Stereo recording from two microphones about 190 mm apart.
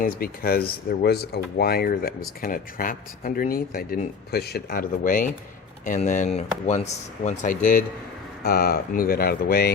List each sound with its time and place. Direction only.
0.0 s speech: 50° left (ahead or behind)